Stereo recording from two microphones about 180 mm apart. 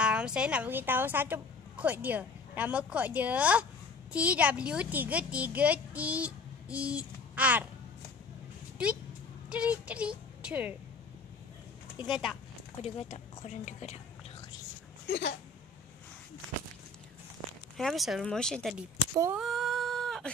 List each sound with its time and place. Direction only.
0.0 s a woman's voice: 5° right (ahead or behind)
9.5 s a woman's voice: 5° right (ahead or behind)
12.0 s speech: centre (ahead or behind)
12.8 s speech: 35° left (ahead or behind)
15.0 s speech: 70° left (ahead or behind)
17.7 s speech: centre (ahead or behind)
19.3 s a sound: centre (ahead or behind)